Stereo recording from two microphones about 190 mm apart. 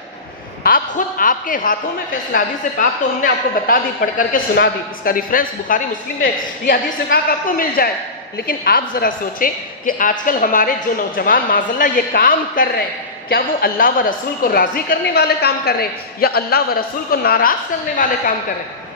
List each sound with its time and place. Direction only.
0.7 s a woman's voice: 50° left (ahead or behind)